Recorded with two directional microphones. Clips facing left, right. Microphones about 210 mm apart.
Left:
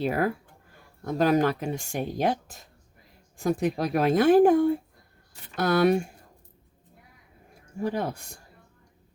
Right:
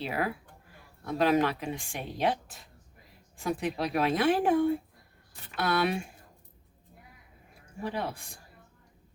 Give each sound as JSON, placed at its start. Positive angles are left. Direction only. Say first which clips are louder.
{"t": 0.0, "sound": "speech", "louder": "left 6 dB", "side_deg": 45}
{"t": 7.8, "sound": "speech", "louder": "left 5 dB", "side_deg": 45}